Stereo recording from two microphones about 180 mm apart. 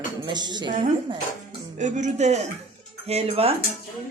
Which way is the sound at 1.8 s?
40° right (ahead or behind).